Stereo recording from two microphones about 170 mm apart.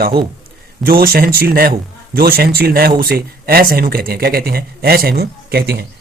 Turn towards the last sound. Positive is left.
turn(degrees=-65)  # may be behind; listen again after turning